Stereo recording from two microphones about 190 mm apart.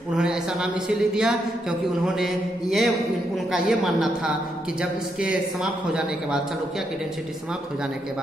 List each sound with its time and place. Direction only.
0.2 s a man's voice: 5° right (ahead or behind)